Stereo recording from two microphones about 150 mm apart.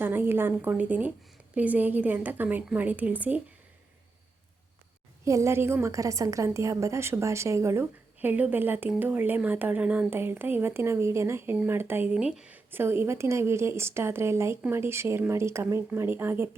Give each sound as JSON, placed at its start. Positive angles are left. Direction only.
{"t": 0.0, "sound": "a woman's voice", "side_deg": -15}
{"t": 5.2, "sound": "a woman's voice", "side_deg": -20}